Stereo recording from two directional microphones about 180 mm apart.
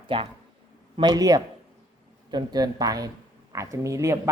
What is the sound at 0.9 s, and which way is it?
Speech, 20° right (ahead or behind).